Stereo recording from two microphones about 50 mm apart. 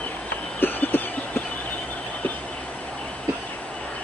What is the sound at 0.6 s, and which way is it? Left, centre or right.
Chicken, left.